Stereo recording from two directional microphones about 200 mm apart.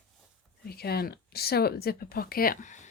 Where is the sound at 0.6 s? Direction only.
50° left (ahead or behind).